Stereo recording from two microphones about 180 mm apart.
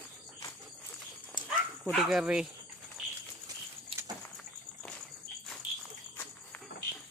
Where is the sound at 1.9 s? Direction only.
Centre (ahead or behind).